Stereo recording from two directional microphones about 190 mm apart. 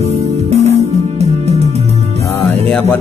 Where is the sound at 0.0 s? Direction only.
35° right (ahead or behind).